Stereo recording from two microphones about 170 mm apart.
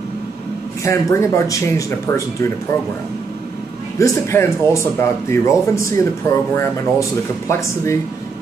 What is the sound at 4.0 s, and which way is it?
Speech, 15° left (ahead or behind).